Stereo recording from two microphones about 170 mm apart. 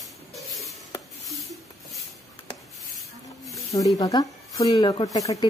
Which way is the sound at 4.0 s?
25° left (ahead or behind).